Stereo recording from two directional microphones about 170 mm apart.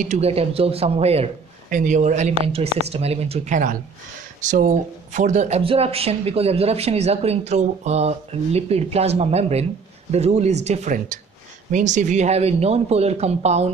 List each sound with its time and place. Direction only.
0.0 s speech: 40° right (ahead or behind)